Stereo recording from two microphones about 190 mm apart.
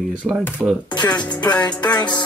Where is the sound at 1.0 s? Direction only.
20° left (ahead or behind).